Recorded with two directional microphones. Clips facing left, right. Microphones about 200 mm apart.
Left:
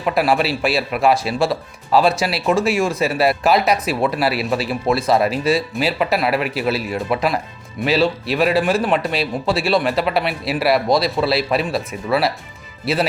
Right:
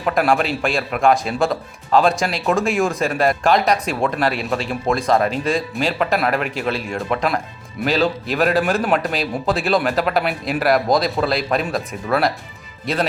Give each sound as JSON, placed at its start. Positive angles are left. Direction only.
{"t": 0.0, "sound": "speech", "side_deg": 5}